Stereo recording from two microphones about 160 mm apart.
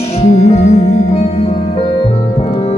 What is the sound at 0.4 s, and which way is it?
Music, 40° left (ahead or behind).